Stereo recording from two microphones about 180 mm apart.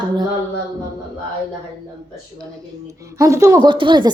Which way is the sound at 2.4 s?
15° right (ahead or behind).